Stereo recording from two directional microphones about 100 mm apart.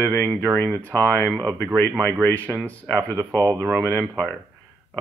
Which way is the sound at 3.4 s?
30° right (ahead or behind).